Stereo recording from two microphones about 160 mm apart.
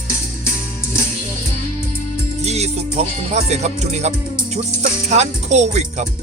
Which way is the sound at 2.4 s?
40° right (ahead or behind).